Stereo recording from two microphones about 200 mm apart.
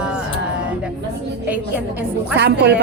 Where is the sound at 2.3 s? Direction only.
60° right (ahead or behind).